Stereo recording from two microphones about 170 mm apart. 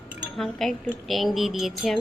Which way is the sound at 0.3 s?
Centre (ahead or behind).